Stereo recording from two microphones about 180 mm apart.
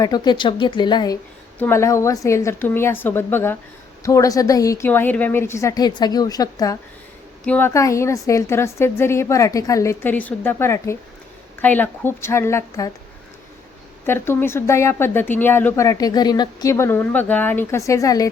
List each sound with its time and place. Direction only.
0.0 s a woman's voice: 25° left (ahead or behind)
1.5 s a woman's voice: 10° left (ahead or behind)
7.4 s speech: 10° left (ahead or behind)
14.1 s speech: 15° left (ahead or behind)